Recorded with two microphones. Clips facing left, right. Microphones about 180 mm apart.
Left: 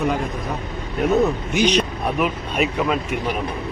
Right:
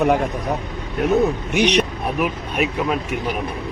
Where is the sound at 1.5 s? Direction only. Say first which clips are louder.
Right 1 dB; 70° right (ahead or behind).